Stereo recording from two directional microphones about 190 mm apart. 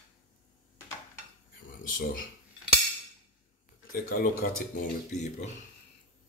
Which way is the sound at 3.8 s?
50° left (ahead or behind).